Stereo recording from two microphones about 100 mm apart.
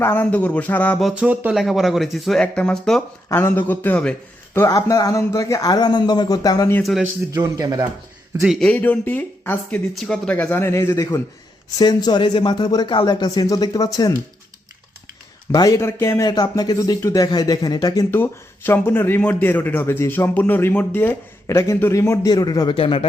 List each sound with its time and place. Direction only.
0.0 s speech: 20° left (ahead or behind)
1.2 s speech: 15° right (ahead or behind)
1.5 s speech: centre (ahead or behind)
3.2 s speech: 25° left (ahead or behind)
4.7 s speech: 35° left (ahead or behind)
7.4 s speech: 40° right (ahead or behind)
8.4 s speech: 5° right (ahead or behind)
8.6 s speech: 15° left (ahead or behind)
11.8 s speech: 45° left (ahead or behind)
15.5 s speech: 35° left (ahead or behind)
16.3 s speech: 40° left (ahead or behind)
18.1 s speech: 20° left (ahead or behind)
21.4 s speech: 30° left (ahead or behind)
22.7 s speech: 65° left (ahead or behind)